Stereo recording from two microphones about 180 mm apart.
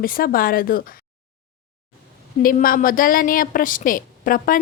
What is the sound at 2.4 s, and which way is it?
A woman's voice, 50° left (ahead or behind).